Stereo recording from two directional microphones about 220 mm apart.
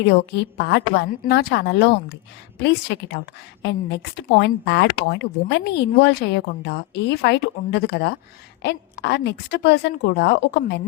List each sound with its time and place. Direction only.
0.0 s speech: 50° left (ahead or behind)